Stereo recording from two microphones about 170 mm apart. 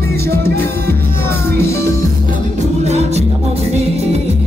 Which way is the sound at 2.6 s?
40° right (ahead or behind).